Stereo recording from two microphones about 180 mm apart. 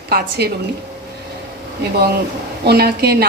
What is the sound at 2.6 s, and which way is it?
Speech, 65° right (ahead or behind).